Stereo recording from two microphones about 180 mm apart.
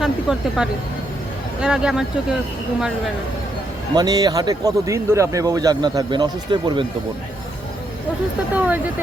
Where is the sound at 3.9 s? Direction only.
20° right (ahead or behind).